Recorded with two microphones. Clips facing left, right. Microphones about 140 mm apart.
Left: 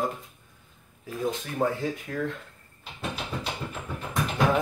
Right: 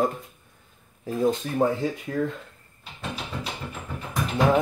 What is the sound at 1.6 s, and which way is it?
Speech, 20° right (ahead or behind).